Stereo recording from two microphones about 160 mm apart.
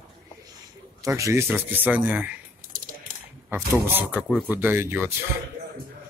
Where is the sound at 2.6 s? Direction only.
60° right (ahead or behind).